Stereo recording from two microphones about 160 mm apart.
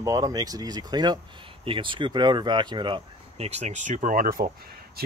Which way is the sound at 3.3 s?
40° right (ahead or behind).